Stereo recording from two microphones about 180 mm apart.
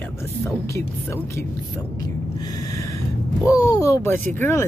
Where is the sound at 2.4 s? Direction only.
20° left (ahead or behind).